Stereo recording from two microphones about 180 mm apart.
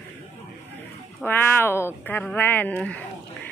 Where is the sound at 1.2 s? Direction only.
10° left (ahead or behind).